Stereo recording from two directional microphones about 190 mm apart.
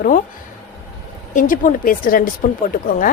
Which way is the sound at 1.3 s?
45° left (ahead or behind).